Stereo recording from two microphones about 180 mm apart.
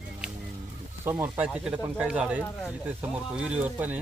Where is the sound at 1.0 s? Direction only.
10° right (ahead or behind).